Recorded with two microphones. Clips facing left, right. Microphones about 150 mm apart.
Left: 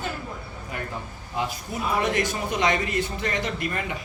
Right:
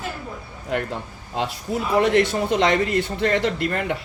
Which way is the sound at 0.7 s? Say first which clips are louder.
Right 8 dB; 75° right (ahead or behind).